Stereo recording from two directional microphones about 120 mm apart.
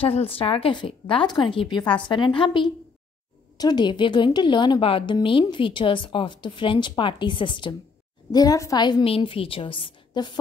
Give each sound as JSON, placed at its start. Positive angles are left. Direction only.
{"t": 0.0, "sound": "a woman's voice", "side_deg": 55}
{"t": 8.3, "sound": "a woman's voice", "side_deg": 30}
{"t": 9.0, "sound": "a woman's voice", "side_deg": 50}